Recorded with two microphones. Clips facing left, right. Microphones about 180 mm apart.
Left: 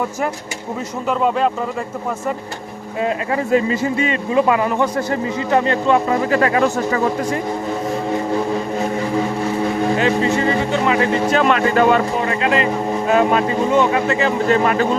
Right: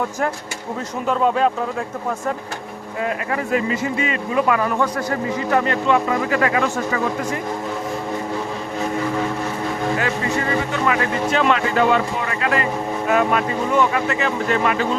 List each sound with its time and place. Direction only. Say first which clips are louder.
1.0 s speech: even; centre (ahead or behind)
3.0 s speech: left 4 dB; 25° left (ahead or behind)
10.0 s speech: left 6 dB; 25° left (ahead or behind)
11.3 s speech: left 3 dB; 45° left (ahead or behind)
12.2 s speech: left 4 dB; 25° left (ahead or behind)